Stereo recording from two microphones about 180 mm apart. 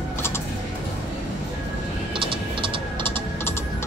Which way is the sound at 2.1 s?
30° right (ahead or behind).